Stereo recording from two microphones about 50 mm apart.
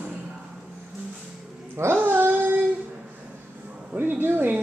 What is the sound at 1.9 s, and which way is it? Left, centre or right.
Child singing, right.